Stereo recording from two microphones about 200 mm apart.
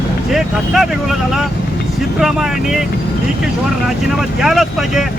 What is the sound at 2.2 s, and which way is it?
Speech, centre (ahead or behind).